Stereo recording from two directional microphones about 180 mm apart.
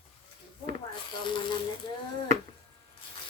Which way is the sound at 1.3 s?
25° left (ahead or behind).